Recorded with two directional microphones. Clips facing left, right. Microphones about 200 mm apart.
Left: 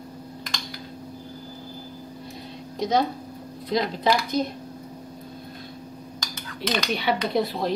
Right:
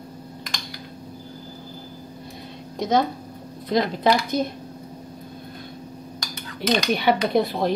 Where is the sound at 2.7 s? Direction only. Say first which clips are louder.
Right 2 dB; 50° right (ahead or behind).